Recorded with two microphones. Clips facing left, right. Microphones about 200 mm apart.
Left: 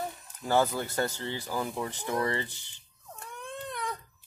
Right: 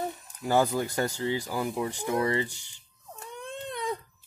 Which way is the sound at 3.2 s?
20° right (ahead or behind).